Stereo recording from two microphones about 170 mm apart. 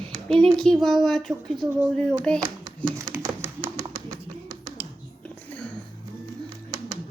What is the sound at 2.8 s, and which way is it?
Tap, 20° right (ahead or behind).